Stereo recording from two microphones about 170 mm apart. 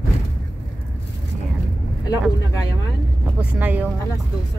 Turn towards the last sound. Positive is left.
turn(degrees=-10)  # may be behind; listen again after turning